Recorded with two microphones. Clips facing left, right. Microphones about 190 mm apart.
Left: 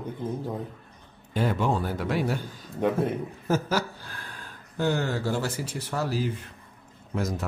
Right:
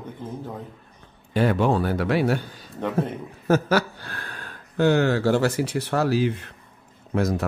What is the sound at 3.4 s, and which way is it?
Speech, 70° right (ahead or behind).